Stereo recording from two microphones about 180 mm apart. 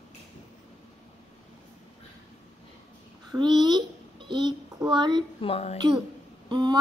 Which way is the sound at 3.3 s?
25° right (ahead or behind).